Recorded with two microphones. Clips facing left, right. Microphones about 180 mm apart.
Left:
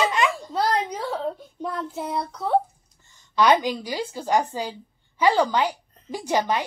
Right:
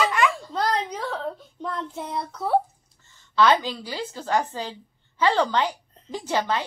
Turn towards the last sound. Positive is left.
turn(degrees=15)  # may be behind; listen again after turning